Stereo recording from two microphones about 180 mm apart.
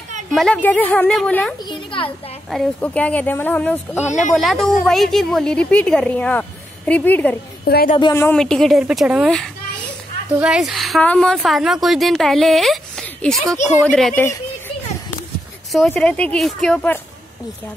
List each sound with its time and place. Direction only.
0.3 s a woman's voice: 5° left (ahead or behind)
1.7 s a woman's voice: 30° left (ahead or behind)
2.5 s a woman's voice: 5° left (ahead or behind)
4.0 s speech: 40° left (ahead or behind)
4.4 s a woman's voice: centre (ahead or behind)
7.6 s a woman's voice: 60° left (ahead or behind)
8.0 s a woman's voice: 15° left (ahead or behind)
8.4 s a woman's voice: centre (ahead or behind)
15.7 s a woman's voice: 5° left (ahead or behind)